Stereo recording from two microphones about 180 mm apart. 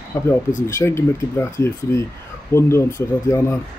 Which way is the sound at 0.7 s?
15° left (ahead or behind).